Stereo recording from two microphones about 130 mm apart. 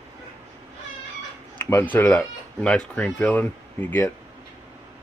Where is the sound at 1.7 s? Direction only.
15° left (ahead or behind).